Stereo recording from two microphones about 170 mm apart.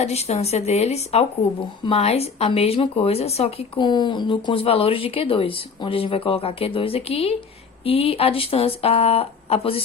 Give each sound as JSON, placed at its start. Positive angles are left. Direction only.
{"t": 0.0, "sound": "speech", "side_deg": 40}